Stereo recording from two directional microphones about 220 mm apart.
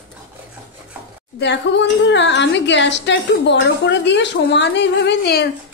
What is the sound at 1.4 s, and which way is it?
A woman's voice, 55° left (ahead or behind).